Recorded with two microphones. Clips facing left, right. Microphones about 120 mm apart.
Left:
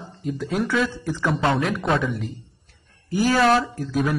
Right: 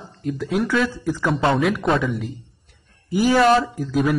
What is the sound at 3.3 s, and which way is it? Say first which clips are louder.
Speech: right 3 dB; centre (ahead or behind).